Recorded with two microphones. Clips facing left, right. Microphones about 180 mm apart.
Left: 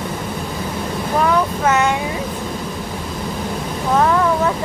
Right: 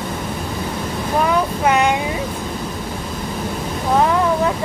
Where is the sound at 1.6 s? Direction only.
15° right (ahead or behind).